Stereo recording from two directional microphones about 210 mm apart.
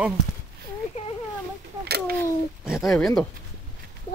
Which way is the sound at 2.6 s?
Centre (ahead or behind).